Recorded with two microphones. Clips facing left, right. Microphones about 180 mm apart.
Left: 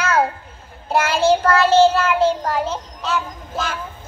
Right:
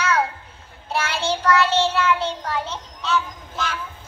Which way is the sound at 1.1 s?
55° left (ahead or behind).